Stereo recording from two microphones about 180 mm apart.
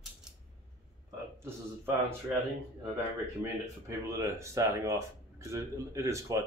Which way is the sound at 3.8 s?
15° right (ahead or behind).